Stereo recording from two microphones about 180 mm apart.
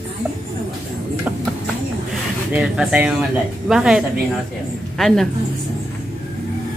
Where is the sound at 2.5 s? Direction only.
5° right (ahead or behind).